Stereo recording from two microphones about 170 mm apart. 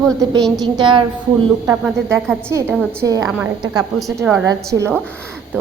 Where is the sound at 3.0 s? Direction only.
20° right (ahead or behind).